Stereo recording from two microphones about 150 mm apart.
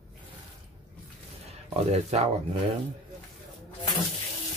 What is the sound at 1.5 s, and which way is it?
Speech, 45° right (ahead or behind).